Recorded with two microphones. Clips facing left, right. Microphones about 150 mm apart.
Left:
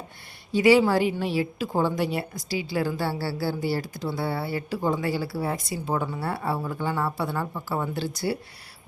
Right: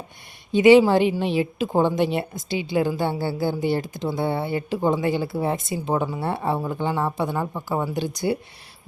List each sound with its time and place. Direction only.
0.5 s speech: 20° right (ahead or behind)